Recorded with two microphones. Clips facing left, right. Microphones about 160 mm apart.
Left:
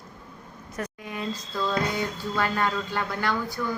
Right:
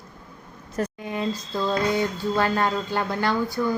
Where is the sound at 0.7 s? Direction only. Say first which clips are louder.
Right 6 dB; 30° right (ahead or behind).